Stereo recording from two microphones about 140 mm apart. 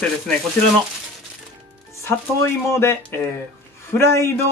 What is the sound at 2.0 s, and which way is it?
Speech, 20° left (ahead or behind).